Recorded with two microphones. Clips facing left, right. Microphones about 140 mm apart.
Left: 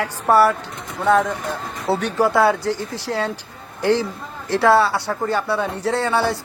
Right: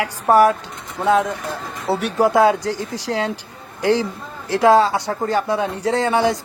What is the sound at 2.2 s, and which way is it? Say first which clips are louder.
Speech: right 3 dB; 15° right (ahead or behind).